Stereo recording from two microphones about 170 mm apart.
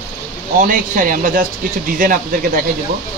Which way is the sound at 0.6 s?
50° right (ahead or behind).